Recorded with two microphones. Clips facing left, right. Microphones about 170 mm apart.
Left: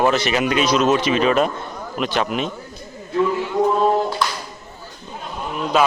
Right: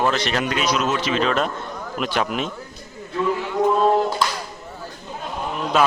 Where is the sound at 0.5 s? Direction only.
25° left (ahead or behind).